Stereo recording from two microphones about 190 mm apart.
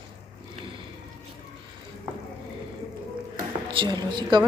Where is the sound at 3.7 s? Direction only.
25° right (ahead or behind).